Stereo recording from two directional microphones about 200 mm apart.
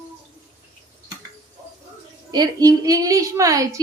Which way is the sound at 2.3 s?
20° right (ahead or behind).